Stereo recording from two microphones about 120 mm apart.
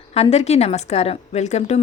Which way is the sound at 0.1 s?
60° left (ahead or behind).